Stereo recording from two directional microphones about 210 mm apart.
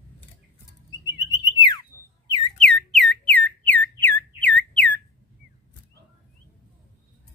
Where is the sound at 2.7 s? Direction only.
5° left (ahead or behind).